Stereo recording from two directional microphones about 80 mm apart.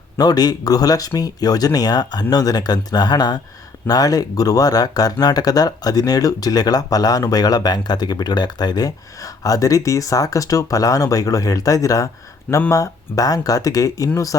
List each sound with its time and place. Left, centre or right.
0.2 s speech: left